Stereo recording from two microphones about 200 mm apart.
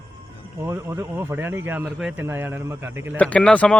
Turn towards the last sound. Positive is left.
turn(degrees=5)  # may be behind; listen again after turning